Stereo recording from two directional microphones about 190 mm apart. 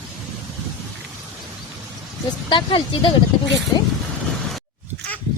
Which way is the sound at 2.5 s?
25° left (ahead or behind).